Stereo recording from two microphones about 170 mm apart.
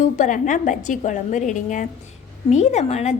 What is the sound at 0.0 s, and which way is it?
A woman's voice, 50° left (ahead or behind).